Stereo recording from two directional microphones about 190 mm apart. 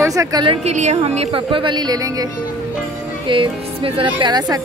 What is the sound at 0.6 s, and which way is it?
Speech, 35° right (ahead or behind).